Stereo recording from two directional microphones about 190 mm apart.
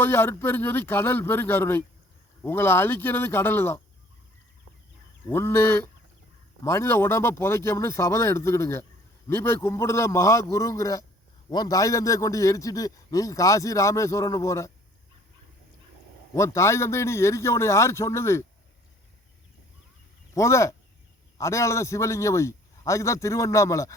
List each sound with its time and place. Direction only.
0.0 s a man's voice: 10° left (ahead or behind)
5.3 s a man's voice: 15° left (ahead or behind)
16.3 s a man's voice: 15° left (ahead or behind)
20.3 s a man's voice: 15° left (ahead or behind)